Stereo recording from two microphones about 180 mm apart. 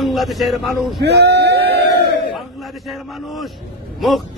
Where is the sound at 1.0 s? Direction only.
65° right (ahead or behind).